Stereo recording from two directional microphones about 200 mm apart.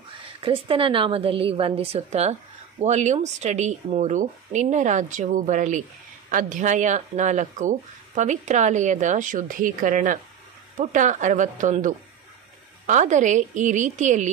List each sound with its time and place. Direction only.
0.4 s a woman's voice: 25° right (ahead or behind)